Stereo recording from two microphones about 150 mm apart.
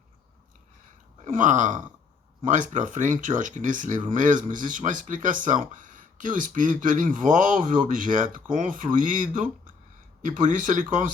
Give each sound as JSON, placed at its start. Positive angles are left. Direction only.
{"t": 1.2, "sound": "speech", "side_deg": -55}